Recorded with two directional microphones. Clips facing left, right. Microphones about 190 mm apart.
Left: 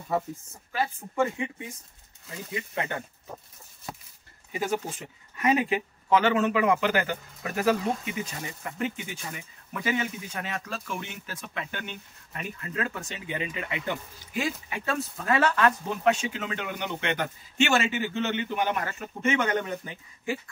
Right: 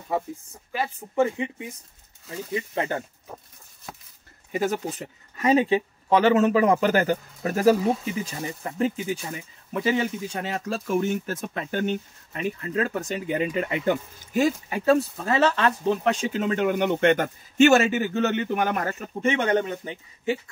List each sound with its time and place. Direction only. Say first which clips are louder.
0.7 s a man's voice: right 3 dB; 20° right (ahead or behind)
2.7 s speech: right 4 dB; 30° right (ahead or behind)
4.5 s speech: right 4 dB; 45° right (ahead or behind)
5.4 s speech: right 5 dB; 30° right (ahead or behind); by 18.9 s 45° right (ahead or behind)
19.2 s a man's voice: right 4 dB; 30° right (ahead or behind)